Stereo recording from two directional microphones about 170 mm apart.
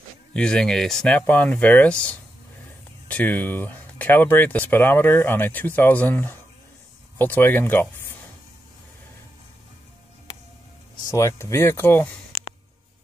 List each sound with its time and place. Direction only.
0.3 s speech: 5° left (ahead or behind)
11.1 s speech: 15° left (ahead or behind)